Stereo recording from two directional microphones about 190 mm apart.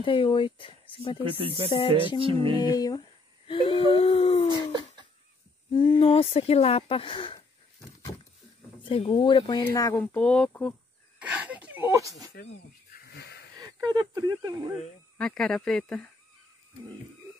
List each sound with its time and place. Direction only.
0.0 s speech: 25° left (ahead or behind)
1.4 s music: 30° right (ahead or behind)
2.6 s speech: 20° left (ahead or behind)
4.5 s a sound: 25° right (ahead or behind)
5.7 s speech: 25° left (ahead or behind)
8.8 s speech: 30° left (ahead or behind)
9.9 s speech: 5° left (ahead or behind)
11.1 s a sound: 5° right (ahead or behind)
12.9 s a sound: 55° left (ahead or behind)
13.6 s speech: 20° right (ahead or behind)
15.1 s speech: 5° left (ahead or behind)